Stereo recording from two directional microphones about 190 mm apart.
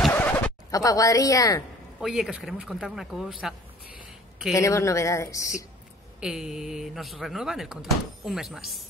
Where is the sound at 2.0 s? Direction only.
Centre (ahead or behind).